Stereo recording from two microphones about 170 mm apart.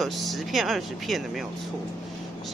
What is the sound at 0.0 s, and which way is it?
Speech, centre (ahead or behind).